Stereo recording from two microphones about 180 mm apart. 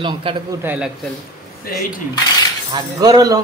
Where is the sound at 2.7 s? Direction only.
20° right (ahead or behind).